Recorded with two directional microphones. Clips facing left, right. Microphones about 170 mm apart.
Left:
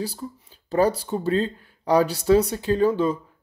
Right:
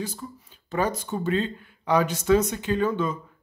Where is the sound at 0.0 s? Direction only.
35° left (ahead or behind).